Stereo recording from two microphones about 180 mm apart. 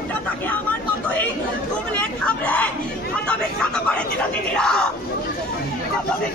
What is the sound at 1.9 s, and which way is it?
Speech, 5° left (ahead or behind).